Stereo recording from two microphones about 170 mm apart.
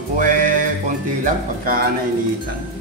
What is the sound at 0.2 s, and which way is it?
Music, 50° right (ahead or behind).